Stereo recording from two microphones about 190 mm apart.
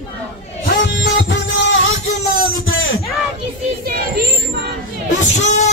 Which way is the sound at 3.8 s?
55° right (ahead or behind).